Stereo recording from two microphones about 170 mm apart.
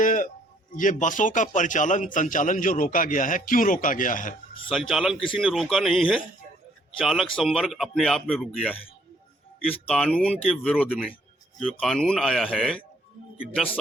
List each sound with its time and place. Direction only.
0.0 s a sound: 55° left (ahead or behind)
0.8 s a man's voice: 50° left (ahead or behind)
4.9 s speech: centre (ahead or behind)